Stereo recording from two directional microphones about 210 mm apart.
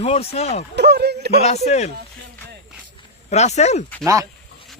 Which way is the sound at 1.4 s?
30° left (ahead or behind).